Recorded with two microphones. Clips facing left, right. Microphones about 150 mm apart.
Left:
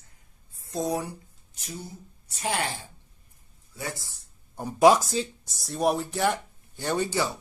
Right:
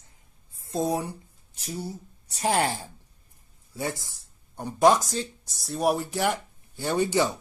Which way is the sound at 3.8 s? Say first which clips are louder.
Right 5 dB; 20° right (ahead or behind).